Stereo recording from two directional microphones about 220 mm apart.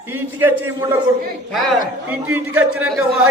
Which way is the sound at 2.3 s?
10° right (ahead or behind).